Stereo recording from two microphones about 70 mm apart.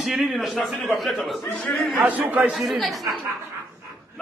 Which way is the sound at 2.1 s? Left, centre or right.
Right.